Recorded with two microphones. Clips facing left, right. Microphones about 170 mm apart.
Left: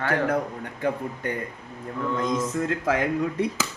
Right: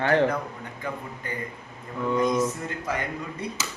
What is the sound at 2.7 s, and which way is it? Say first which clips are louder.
Speech: left 7 dB; 90° left.